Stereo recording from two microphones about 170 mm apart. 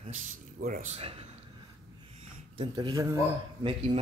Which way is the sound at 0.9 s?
35° right (ahead or behind).